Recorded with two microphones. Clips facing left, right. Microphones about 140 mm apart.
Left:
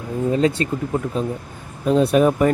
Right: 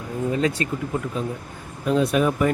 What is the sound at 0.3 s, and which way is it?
Speech, 30° left (ahead or behind).